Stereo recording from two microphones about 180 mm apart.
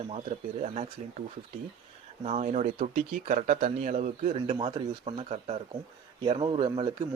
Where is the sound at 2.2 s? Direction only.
40° right (ahead or behind).